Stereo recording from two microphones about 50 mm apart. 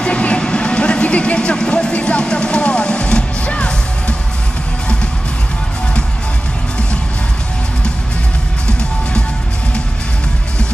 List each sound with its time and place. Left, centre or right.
0.0 s vehicle: left